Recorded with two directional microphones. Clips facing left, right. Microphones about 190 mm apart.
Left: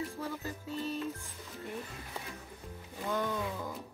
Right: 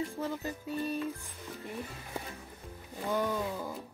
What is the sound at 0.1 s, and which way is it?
Speech, 15° right (ahead or behind).